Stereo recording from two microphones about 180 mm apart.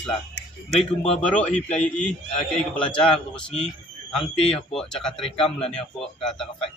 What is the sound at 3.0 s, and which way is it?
Speech, 5° left (ahead or behind).